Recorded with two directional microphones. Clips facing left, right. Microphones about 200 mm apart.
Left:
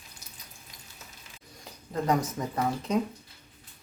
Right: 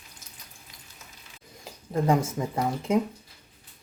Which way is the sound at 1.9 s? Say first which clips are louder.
Right 3 dB; 25° right (ahead or behind).